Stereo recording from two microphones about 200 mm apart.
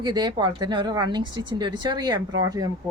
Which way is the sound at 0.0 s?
20° right (ahead or behind).